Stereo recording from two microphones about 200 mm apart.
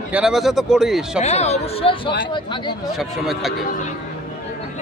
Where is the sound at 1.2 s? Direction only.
35° left (ahead or behind).